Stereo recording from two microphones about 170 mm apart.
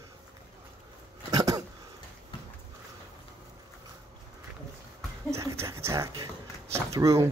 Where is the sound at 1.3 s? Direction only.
20° right (ahead or behind).